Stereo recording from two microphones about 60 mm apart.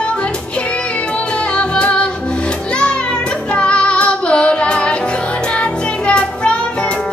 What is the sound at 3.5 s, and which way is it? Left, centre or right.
Child singing, centre.